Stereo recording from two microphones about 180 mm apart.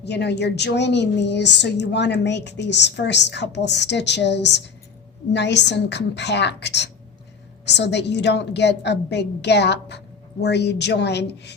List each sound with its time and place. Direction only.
0.0 s a woman's voice: 70° left (ahead or behind)